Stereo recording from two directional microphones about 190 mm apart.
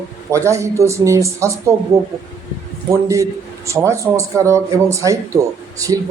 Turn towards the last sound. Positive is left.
turn(degrees=-15)  # may be behind; listen again after turning